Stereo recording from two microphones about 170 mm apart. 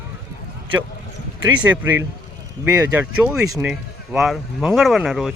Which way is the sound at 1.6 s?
10° right (ahead or behind).